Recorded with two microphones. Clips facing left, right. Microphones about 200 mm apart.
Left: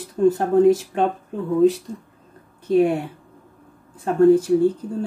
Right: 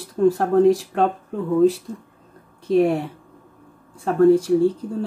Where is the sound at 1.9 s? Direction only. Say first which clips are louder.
Even; 10° left (ahead or behind).